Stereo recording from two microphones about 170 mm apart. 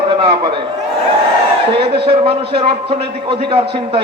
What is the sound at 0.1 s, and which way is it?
Speech, 30° right (ahead or behind).